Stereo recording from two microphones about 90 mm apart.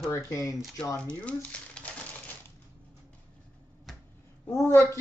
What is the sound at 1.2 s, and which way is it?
Speech, 15° left (ahead or behind).